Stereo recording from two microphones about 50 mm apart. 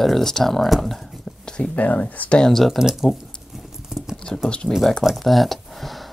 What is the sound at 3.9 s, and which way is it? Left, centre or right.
Computer keyboard, centre.